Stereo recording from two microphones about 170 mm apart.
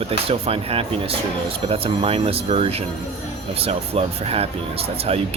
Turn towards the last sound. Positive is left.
turn(degrees=-35)  # may be behind; listen again after turning